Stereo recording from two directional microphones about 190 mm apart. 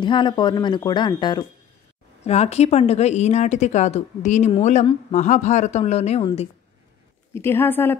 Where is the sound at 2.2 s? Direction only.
35° left (ahead or behind).